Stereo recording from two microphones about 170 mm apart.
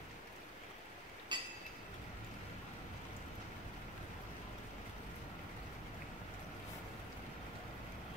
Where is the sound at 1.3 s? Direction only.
25° right (ahead or behind).